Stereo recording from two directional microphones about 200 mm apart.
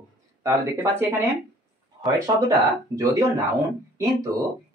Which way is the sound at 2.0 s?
20° right (ahead or behind).